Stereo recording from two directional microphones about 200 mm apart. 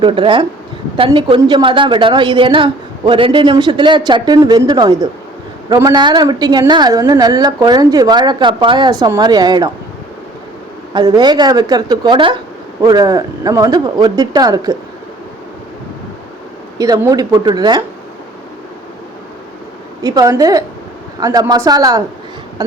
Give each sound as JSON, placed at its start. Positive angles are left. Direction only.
{"t": 0.0, "sound": "a woman's voice", "side_deg": -25}
{"t": 10.9, "sound": "a woman's voice", "side_deg": -20}
{"t": 16.7, "sound": "a woman's voice", "side_deg": -20}
{"t": 20.0, "sound": "speech", "side_deg": -15}